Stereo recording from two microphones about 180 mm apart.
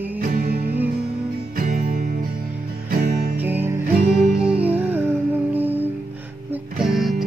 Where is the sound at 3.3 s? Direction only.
10° right (ahead or behind).